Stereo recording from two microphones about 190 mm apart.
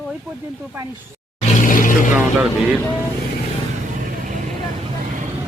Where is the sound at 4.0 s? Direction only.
45° right (ahead or behind).